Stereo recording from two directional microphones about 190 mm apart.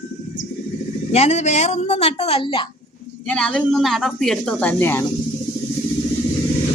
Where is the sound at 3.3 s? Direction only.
5° left (ahead or behind).